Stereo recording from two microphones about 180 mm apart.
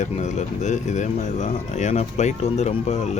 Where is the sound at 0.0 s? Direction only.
40° left (ahead or behind).